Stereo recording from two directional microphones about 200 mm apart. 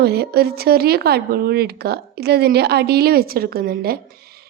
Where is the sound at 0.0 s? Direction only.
50° right (ahead or behind).